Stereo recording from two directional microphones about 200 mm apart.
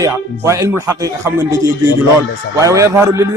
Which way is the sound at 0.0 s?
15° right (ahead or behind).